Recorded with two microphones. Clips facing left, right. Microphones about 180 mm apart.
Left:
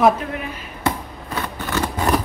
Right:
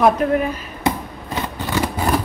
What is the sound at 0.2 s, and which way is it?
Speech, 45° right (ahead or behind).